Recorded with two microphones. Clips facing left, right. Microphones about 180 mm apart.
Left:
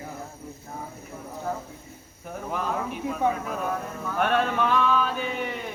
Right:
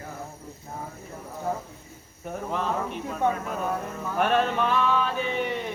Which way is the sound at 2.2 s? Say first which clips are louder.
Right 1 dB; centre (ahead or behind).